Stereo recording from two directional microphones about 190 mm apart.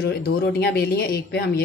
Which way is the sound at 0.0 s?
55° left (ahead or behind).